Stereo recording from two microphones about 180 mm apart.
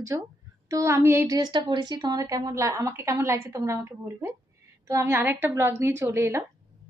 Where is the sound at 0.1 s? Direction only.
20° right (ahead or behind).